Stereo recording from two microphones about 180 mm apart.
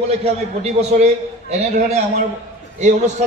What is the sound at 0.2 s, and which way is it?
A man's voice, 35° right (ahead or behind).